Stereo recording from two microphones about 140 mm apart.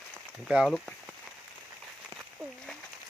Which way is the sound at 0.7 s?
5° left (ahead or behind).